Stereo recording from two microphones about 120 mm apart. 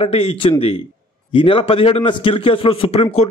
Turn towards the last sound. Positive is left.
turn(degrees=55)  # may be behind; listen again after turning